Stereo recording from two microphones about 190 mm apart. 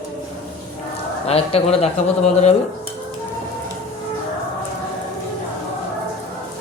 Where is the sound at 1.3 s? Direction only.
30° left (ahead or behind).